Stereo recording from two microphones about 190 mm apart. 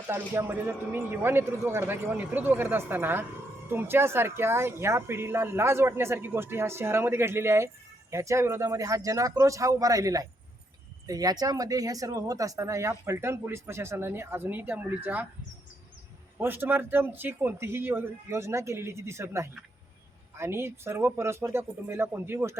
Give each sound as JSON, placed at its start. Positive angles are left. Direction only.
{"t": 0.1, "sound": "speech", "side_deg": -10}
{"t": 16.4, "sound": "speech", "side_deg": -10}